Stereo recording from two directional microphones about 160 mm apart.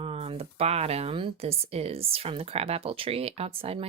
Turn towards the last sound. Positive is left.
turn(degrees=-35)  # may be behind; listen again after turning